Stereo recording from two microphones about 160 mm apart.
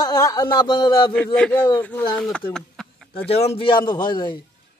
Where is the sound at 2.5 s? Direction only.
5° left (ahead or behind).